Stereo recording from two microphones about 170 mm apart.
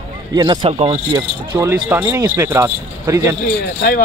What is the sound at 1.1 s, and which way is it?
Speech, 25° right (ahead or behind).